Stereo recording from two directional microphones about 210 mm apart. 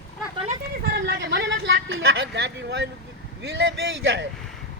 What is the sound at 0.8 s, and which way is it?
Speech, 50° right (ahead or behind).